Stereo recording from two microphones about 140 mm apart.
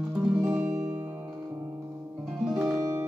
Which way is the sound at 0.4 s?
20° right (ahead or behind).